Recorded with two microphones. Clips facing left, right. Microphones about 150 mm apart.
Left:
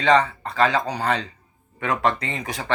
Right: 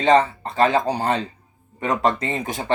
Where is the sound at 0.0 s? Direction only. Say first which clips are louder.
Right 2 dB; 25° right (ahead or behind).